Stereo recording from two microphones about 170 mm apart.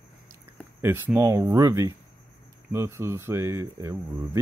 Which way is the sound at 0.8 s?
15° right (ahead or behind).